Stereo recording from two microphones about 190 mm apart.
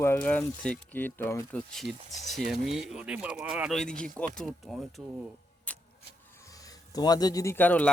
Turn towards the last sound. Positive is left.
turn(degrees=10)  # may be behind; listen again after turning